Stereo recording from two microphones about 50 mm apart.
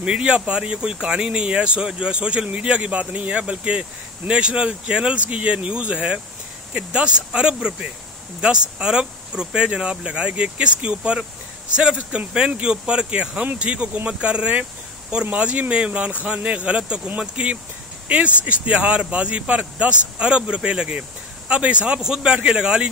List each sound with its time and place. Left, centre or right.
0.0 s speech: centre